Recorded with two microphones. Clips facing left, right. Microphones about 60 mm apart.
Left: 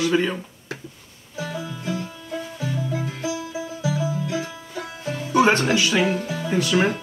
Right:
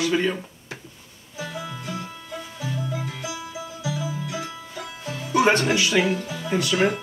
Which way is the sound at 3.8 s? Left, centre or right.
Left.